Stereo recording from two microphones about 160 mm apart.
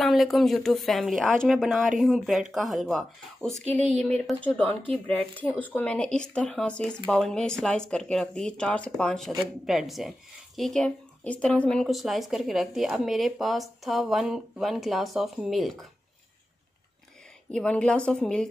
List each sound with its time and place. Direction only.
0.0 s speech: centre (ahead or behind)
17.5 s speech: 5° left (ahead or behind)